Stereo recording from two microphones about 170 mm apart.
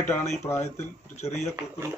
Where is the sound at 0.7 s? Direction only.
40° left (ahead or behind).